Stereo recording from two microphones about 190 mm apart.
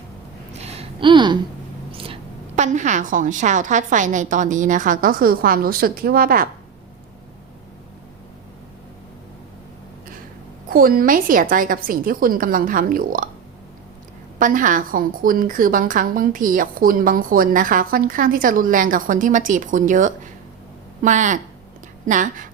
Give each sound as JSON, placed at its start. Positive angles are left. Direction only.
{"t": 0.6, "sound": "a sound", "side_deg": -30}
{"t": 2.6, "sound": "a woman's voice", "side_deg": -40}
{"t": 10.7, "sound": "a woman's voice", "side_deg": -50}
{"t": 14.3, "sound": "a woman's voice", "side_deg": -45}